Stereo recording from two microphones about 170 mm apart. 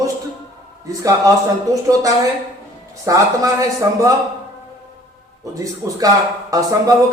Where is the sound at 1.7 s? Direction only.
20° right (ahead or behind).